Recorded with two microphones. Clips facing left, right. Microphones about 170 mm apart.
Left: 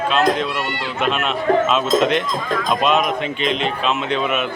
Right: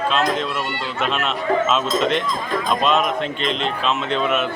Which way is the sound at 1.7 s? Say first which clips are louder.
Left 3 dB; 5° left (ahead or behind).